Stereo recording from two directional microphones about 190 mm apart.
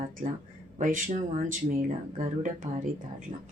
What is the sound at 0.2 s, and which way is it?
Speech, 45° right (ahead or behind).